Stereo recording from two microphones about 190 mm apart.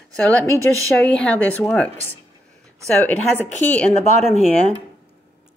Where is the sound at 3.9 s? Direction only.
35° right (ahead or behind).